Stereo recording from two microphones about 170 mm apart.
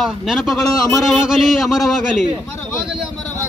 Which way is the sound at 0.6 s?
20° left (ahead or behind).